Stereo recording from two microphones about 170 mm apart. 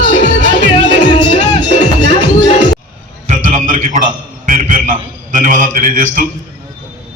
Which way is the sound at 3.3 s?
50° right (ahead or behind).